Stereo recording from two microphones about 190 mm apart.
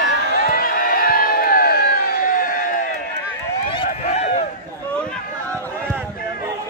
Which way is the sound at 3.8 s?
35° left (ahead or behind).